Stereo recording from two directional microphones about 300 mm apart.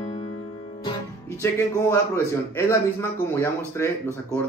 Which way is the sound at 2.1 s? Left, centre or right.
Centre.